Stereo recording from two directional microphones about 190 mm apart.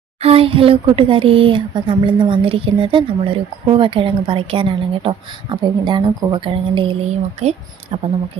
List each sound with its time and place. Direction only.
0.2 s speech: 30° right (ahead or behind)